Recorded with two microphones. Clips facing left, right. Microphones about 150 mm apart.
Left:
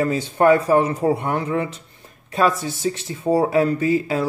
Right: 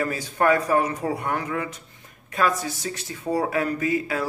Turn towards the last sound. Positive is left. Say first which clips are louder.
# left 5 dB
turn(degrees=25)  # may be behind; listen again after turning